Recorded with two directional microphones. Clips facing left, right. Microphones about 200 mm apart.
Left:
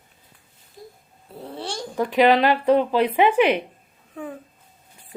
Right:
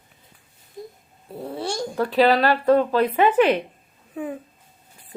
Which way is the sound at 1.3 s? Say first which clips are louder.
Right 4 dB; 10° right (ahead or behind).